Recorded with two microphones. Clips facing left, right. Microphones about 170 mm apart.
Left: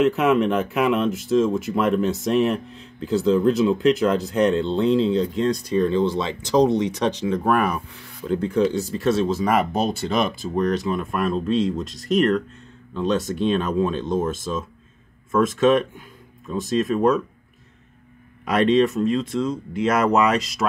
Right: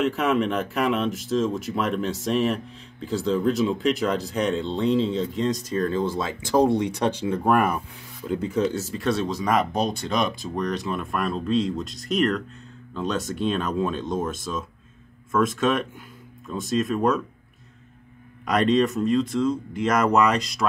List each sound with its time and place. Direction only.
0.0 s speech: centre (ahead or behind)
18.4 s speech: centre (ahead or behind)